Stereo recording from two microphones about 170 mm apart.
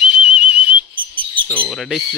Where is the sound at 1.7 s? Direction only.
5° left (ahead or behind).